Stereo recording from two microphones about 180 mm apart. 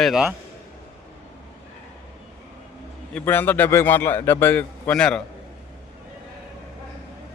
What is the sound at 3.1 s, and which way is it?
A man's voice, 10° left (ahead or behind).